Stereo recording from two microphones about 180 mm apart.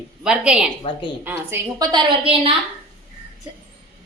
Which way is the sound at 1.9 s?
25° right (ahead or behind).